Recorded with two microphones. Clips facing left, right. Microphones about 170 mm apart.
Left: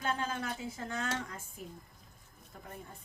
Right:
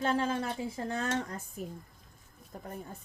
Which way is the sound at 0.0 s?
30° right (ahead or behind).